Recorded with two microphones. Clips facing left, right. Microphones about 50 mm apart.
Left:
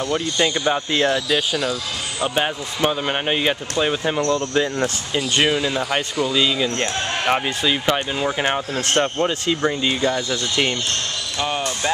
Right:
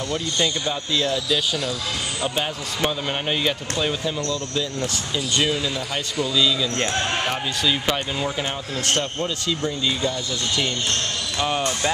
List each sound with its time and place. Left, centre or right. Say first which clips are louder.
0.1 s speech: left 3 dB; left
1.5 s speech: left 3 dB; left
4.0 s speech: left 6 dB; left
6.1 s speech: even; left
8.4 s speech: left 5 dB; left
11.3 s speech: even; centre